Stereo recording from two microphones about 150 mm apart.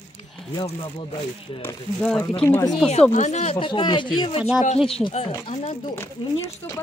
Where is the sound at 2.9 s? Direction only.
50° left (ahead or behind).